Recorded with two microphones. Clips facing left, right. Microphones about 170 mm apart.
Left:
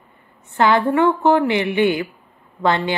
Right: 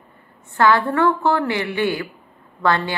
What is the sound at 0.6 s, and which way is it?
A woman's voice, 20° left (ahead or behind).